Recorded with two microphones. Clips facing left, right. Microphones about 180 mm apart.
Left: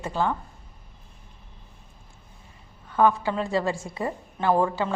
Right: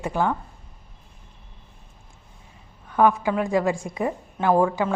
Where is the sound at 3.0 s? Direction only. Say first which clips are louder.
Right 2 dB; 15° right (ahead or behind).